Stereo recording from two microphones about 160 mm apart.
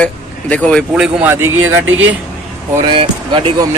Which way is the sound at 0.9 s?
10° right (ahead or behind).